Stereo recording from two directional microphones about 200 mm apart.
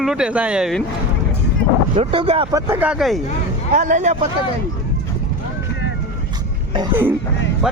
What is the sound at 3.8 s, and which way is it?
Speech, 35° right (ahead or behind).